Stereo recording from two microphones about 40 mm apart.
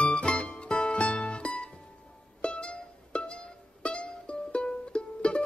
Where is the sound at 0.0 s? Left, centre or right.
Left.